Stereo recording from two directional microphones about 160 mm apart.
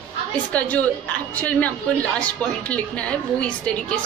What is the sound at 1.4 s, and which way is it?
Speech, 10° left (ahead or behind).